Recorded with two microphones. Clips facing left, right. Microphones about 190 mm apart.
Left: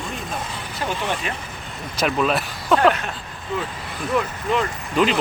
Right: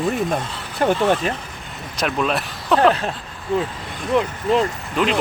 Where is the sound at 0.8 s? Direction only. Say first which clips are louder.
Right 9 dB; 50° right (ahead or behind).